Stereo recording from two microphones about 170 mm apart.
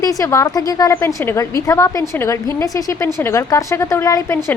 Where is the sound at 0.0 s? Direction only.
20° left (ahead or behind).